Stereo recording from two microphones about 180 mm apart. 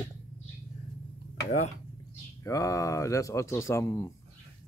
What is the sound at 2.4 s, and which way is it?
Speech, 20° left (ahead or behind).